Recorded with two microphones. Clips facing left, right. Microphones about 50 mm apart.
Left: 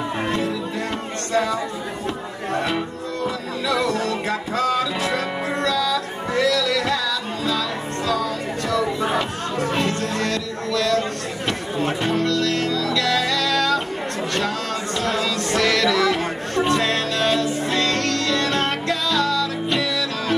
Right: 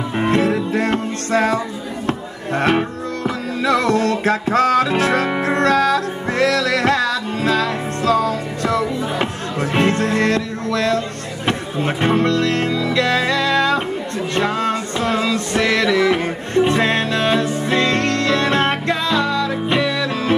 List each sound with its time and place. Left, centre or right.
0.2 s music: right
2.0 s a sound: right
3.3 s music: right